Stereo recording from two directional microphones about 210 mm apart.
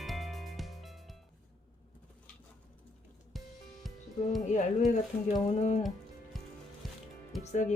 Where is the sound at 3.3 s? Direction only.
Centre (ahead or behind).